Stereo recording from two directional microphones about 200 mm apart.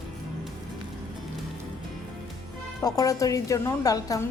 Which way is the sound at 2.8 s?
20° left (ahead or behind).